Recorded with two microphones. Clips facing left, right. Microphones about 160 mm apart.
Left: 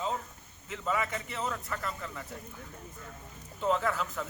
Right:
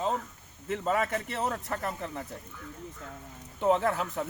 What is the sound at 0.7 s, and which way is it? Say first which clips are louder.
A man's voice: right 4 dB; 60° right (ahead or behind).